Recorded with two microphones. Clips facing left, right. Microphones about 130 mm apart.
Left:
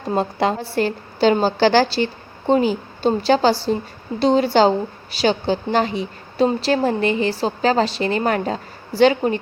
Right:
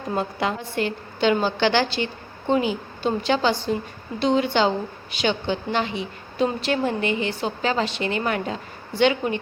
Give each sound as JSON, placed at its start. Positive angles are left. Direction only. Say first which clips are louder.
{"t": 0.1, "sound": "a woman's voice", "louder": "left 5 dB", "side_deg": 35}